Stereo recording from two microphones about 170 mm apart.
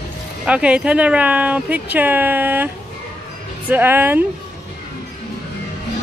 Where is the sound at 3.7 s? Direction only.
10° right (ahead or behind).